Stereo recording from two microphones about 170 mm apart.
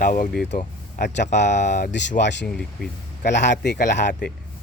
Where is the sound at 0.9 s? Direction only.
80° left.